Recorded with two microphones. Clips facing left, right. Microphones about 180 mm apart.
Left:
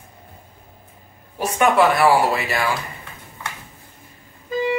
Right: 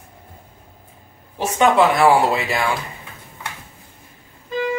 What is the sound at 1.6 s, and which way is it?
Speech, 20° right (ahead or behind).